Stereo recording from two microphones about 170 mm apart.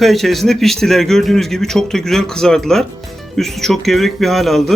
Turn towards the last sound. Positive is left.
turn(degrees=0)  # may be behind; listen again after turning